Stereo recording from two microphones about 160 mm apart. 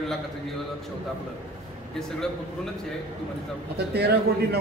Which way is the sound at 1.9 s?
5° left (ahead or behind).